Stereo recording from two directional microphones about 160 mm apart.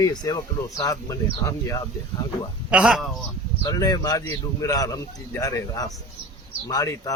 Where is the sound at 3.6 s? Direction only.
25° left (ahead or behind).